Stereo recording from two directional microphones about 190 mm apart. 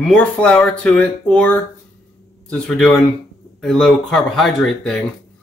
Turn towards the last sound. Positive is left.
turn(degrees=5)  # may be behind; listen again after turning